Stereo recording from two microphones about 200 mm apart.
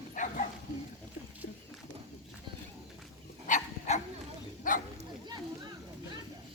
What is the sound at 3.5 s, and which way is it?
Dog, 35° left (ahead or behind).